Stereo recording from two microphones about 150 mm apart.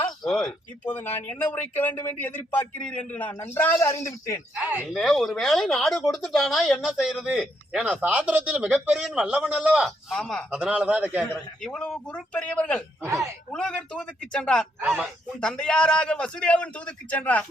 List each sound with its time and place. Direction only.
0.3 s speech: 5° left (ahead or behind); by 4.4 s 20° left (ahead or behind)
4.6 s speech: 10° right (ahead or behind)
10.5 s a man's voice: 10° right (ahead or behind)
11.6 s speech: 5° left (ahead or behind)